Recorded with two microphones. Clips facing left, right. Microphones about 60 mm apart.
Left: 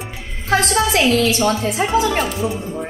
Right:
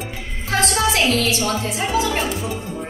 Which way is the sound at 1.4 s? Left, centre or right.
Left.